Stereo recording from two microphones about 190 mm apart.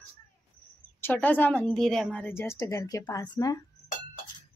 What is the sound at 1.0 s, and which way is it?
A woman's voice, 10° left (ahead or behind).